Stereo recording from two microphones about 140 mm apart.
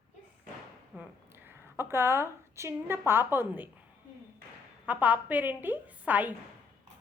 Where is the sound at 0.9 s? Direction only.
15° right (ahead or behind).